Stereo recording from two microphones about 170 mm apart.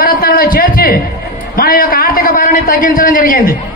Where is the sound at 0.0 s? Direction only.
60° left (ahead or behind).